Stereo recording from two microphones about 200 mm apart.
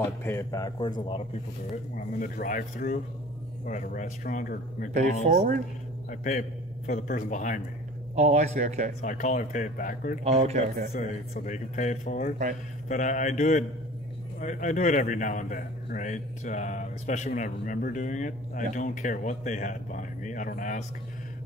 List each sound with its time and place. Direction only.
0.2 s speech: 15° left (ahead or behind)
2.0 s a man's voice: 45° left (ahead or behind)
5.3 s speech: 40° right (ahead or behind)
6.0 s a man's voice: 40° left (ahead or behind)
8.2 s speech: 35° right (ahead or behind)
9.0 s a man's voice: 40° left (ahead or behind)
10.2 s speech: 35° right (ahead or behind)
11.3 s a man's voice: 40° left (ahead or behind)